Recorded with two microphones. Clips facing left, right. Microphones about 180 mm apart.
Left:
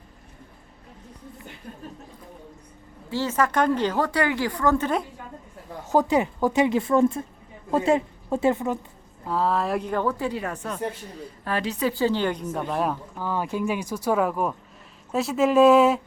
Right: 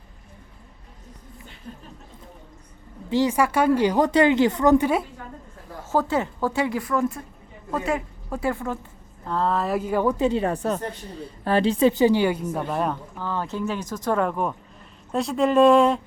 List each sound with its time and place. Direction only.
3.1 s a woman's voice: 15° right (ahead or behind)
5.9 s a woman's voice: 15° left (ahead or behind)
9.2 s a woman's voice: 5° left (ahead or behind)